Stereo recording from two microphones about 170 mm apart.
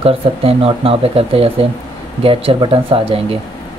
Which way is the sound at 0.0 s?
35° right (ahead or behind).